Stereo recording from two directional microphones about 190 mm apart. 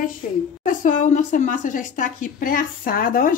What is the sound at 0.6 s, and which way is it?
A woman's voice, 40° left (ahead or behind).